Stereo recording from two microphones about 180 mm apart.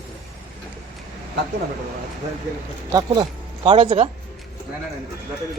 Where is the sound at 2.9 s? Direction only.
25° right (ahead or behind).